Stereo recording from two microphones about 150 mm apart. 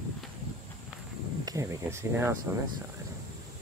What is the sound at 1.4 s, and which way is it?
Speech, 20° right (ahead or behind).